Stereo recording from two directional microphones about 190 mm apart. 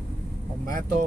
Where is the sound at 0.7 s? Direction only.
45° right (ahead or behind).